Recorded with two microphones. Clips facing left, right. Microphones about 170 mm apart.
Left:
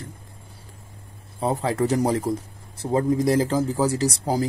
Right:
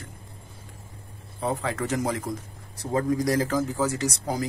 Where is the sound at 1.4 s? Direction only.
35° left (ahead or behind).